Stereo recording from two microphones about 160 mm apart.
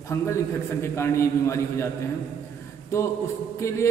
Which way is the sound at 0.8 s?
15° left (ahead or behind).